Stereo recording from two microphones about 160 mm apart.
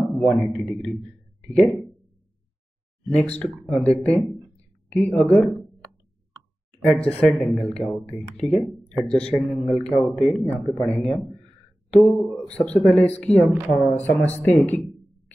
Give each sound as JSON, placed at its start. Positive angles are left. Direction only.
{"t": 0.1, "sound": "a man's voice", "side_deg": 0}
{"t": 3.1, "sound": "speech", "side_deg": 5}
{"t": 7.1, "sound": "speech", "side_deg": 10}